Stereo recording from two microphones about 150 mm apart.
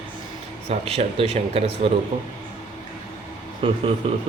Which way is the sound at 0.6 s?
45° right (ahead or behind).